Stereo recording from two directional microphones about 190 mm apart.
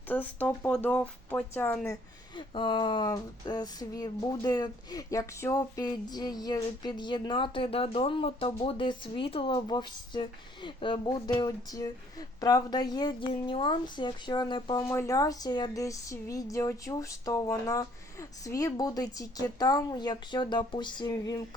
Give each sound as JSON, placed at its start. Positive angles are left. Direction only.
{"t": 0.1, "sound": "speech", "side_deg": 10}
{"t": 2.3, "sound": "speech", "side_deg": 25}